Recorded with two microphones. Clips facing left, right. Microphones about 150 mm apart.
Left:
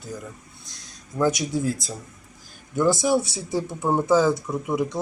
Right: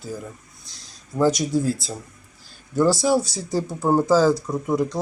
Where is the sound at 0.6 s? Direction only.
Centre (ahead or behind).